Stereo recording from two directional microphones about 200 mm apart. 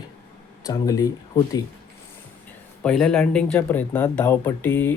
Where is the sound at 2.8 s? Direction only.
5° left (ahead or behind).